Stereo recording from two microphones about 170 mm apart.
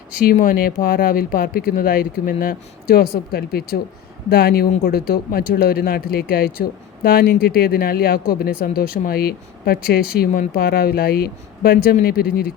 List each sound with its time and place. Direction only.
0.3 s speech: 60° left (ahead or behind)